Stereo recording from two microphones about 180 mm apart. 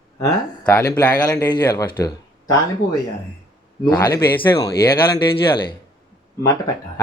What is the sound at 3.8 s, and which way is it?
Speech, 20° left (ahead or behind).